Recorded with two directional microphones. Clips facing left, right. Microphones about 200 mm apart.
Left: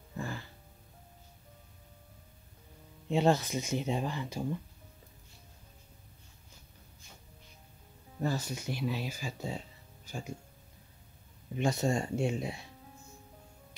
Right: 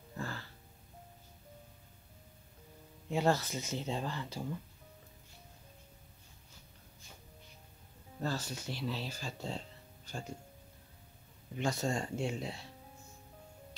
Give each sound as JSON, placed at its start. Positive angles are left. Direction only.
{"t": 0.2, "sound": "music", "side_deg": 15}
{"t": 3.1, "sound": "speech", "side_deg": 20}
{"t": 8.2, "sound": "speech", "side_deg": 15}
{"t": 11.5, "sound": "speech", "side_deg": 20}